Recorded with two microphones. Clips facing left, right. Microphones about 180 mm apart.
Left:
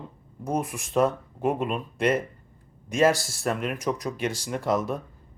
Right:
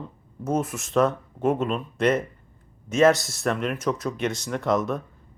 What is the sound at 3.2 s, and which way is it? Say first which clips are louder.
Speech: even; 30° left (ahead or behind).